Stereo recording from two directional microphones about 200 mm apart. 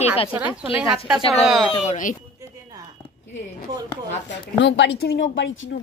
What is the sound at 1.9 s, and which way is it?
Speech, 40° left (ahead or behind).